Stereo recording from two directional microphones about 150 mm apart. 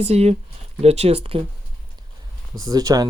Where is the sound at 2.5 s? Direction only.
25° right (ahead or behind).